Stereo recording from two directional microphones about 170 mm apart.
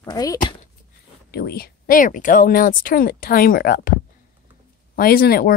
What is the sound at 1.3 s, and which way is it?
Speech, 65° left (ahead or behind).